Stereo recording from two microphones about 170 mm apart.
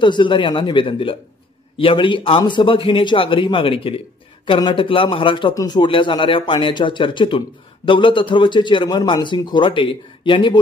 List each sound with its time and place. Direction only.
0.0 s a man's voice: 30° left (ahead or behind)